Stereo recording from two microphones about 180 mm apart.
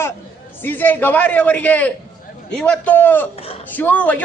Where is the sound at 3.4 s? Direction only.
35° left (ahead or behind).